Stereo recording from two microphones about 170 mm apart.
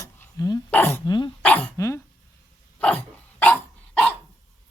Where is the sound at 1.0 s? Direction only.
25° left (ahead or behind).